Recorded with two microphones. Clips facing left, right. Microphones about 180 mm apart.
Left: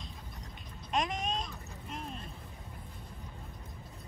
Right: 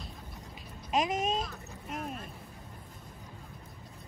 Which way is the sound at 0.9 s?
5° right (ahead or behind).